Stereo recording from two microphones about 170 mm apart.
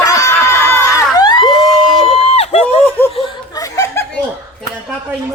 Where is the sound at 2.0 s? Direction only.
35° left (ahead or behind).